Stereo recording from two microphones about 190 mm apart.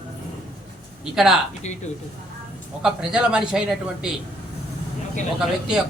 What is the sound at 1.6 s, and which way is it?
Speech, 35° left (ahead or behind).